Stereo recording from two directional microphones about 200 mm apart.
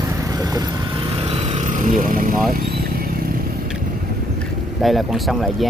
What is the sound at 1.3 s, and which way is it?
Vehicle, 30° right (ahead or behind).